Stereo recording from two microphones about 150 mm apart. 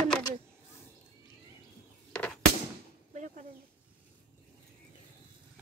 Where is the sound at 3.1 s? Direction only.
55° right (ahead or behind).